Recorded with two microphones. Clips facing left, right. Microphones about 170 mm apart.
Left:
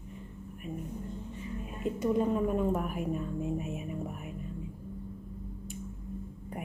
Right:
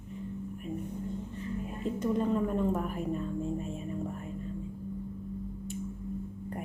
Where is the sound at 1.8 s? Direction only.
10° left (ahead or behind).